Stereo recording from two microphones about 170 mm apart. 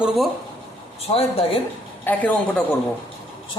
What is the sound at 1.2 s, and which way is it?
Speech, 35° left (ahead or behind).